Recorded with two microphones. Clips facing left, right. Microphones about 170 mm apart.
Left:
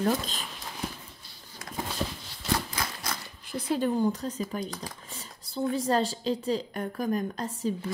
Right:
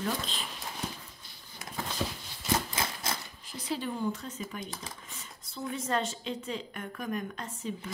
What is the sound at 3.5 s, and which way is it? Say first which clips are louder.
A woman's voice: left 7 dB; 50° left (ahead or behind).